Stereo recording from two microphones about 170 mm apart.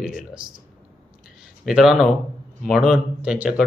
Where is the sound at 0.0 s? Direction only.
Centre (ahead or behind).